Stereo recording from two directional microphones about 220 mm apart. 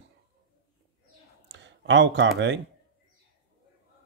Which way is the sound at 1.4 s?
55° right (ahead or behind).